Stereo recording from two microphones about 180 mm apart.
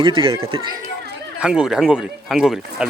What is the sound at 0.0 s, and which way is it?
Speech, 30° right (ahead or behind).